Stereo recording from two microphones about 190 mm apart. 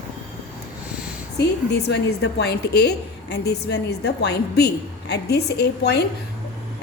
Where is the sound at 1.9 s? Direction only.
60° left (ahead or behind).